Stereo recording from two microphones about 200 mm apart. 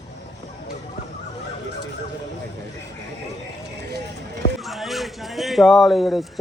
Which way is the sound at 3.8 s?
55° right (ahead or behind).